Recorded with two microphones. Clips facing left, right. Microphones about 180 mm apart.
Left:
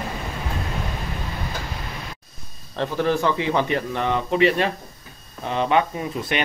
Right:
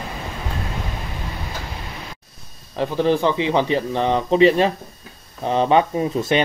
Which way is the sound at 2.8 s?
20° right (ahead or behind).